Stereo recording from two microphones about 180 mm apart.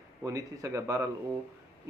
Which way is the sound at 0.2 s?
20° right (ahead or behind).